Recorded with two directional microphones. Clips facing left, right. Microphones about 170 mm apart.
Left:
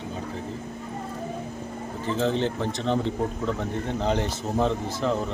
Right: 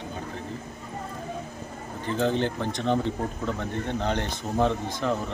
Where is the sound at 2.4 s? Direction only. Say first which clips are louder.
Left 1 dB; centre (ahead or behind).